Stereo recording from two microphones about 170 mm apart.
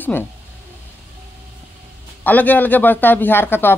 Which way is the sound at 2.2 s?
10° left (ahead or behind).